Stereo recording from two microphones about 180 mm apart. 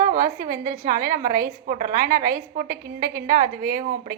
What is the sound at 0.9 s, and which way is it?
A woman's voice, 50° right (ahead or behind).